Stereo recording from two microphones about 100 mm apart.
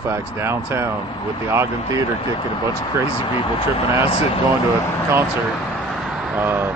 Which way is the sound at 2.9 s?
30° right (ahead or behind).